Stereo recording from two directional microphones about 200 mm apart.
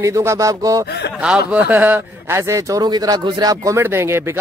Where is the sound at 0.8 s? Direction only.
55° left (ahead or behind).